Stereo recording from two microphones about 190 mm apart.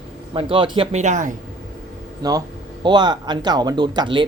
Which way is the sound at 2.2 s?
20° right (ahead or behind).